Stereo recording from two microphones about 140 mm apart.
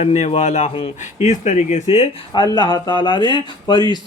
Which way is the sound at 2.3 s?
30° left (ahead or behind).